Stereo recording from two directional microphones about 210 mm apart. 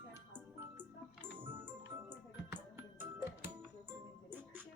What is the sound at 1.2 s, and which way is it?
Music, 25° right (ahead or behind).